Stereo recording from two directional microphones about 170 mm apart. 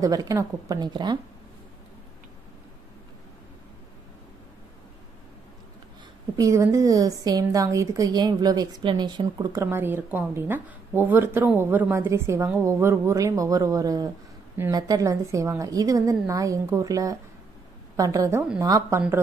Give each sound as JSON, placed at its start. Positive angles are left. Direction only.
{"t": 0.0, "sound": "a woman's voice", "side_deg": -20}
{"t": 6.3, "sound": "a woman's voice", "side_deg": -20}